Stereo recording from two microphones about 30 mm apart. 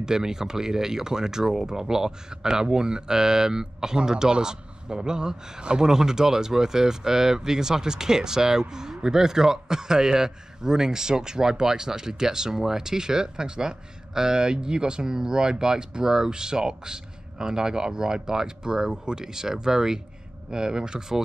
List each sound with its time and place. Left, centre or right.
0.0 s speech: right
5.9 s speech: centre